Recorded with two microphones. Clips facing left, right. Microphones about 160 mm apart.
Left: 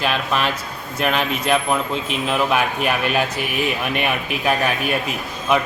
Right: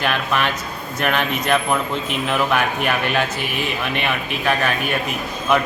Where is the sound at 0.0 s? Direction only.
Centre (ahead or behind).